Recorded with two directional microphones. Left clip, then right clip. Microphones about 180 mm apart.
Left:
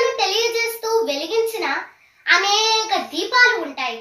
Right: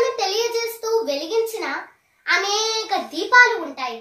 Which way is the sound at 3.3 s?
25° right (ahead or behind).